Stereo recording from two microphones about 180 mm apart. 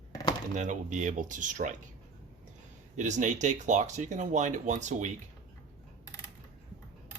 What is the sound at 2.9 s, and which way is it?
Speech, 40° right (ahead or behind).